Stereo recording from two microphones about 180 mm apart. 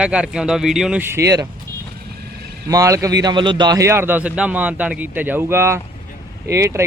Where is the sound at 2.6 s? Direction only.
20° right (ahead or behind).